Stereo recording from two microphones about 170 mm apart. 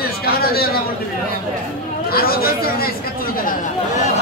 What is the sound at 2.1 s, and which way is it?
Chatter, 60° left (ahead or behind).